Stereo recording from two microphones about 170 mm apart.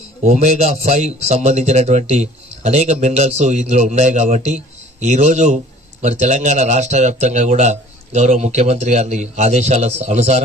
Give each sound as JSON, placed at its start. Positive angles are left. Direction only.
{"t": 0.2, "sound": "a man's voice", "side_deg": -45}